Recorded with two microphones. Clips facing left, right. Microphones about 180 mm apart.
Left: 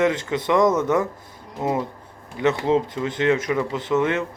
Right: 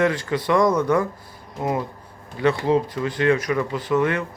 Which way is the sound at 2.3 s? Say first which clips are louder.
Even; 20° left (ahead or behind).